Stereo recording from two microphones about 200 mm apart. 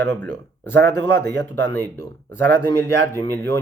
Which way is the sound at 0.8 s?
55° right (ahead or behind).